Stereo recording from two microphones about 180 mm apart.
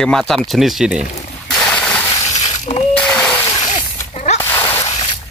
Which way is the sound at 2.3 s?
35° left (ahead or behind).